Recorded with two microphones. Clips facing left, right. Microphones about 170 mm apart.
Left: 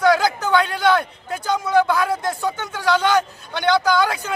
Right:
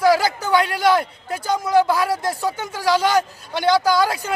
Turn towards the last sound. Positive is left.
turn(degrees=-10)  # may be behind; listen again after turning